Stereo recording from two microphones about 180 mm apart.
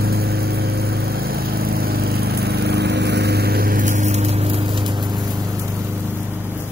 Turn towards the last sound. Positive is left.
turn(degrees=-25)  # may be behind; listen again after turning